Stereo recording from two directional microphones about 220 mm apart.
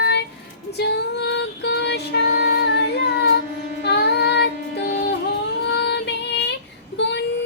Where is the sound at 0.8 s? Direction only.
50° left (ahead or behind).